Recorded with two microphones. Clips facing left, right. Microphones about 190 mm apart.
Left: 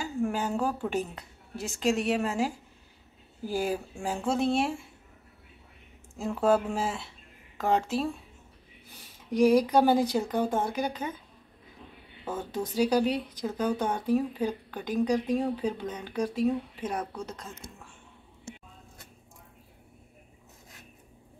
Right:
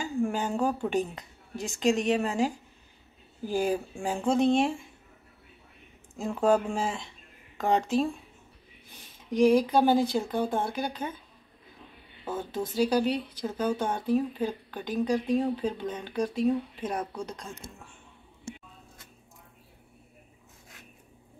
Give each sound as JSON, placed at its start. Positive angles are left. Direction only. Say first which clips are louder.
{"t": 0.0, "sound": "a woman's voice", "louder": "right 1 dB", "side_deg": 5}
{"t": 6.2, "sound": "speech", "louder": "even", "side_deg": 5}
{"t": 9.3, "sound": "speech", "louder": "even", "side_deg": 10}
{"t": 12.4, "sound": "speech", "louder": "even", "side_deg": 10}
{"t": 16.9, "sound": "speech", "louder": "right 1 dB", "side_deg": -10}
{"t": 17.6, "sound": "speech", "louder": "right 1 dB", "side_deg": -25}